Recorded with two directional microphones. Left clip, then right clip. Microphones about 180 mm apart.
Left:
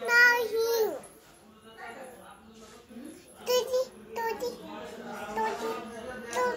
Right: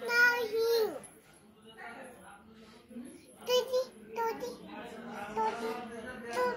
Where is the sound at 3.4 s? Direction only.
15° left (ahead or behind).